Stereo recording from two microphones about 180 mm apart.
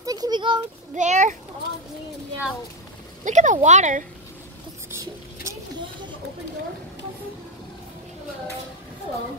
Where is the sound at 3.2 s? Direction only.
45° right (ahead or behind).